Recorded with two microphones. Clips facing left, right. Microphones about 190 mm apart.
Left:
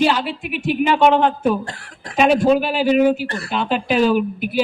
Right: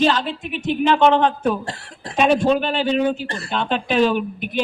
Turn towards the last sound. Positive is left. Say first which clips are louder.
# left 4 dB
turn(degrees=5)  # may be behind; listen again after turning